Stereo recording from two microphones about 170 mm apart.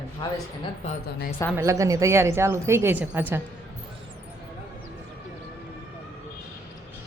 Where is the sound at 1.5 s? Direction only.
15° right (ahead or behind).